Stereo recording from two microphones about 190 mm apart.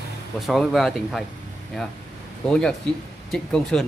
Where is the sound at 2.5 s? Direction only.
5° left (ahead or behind).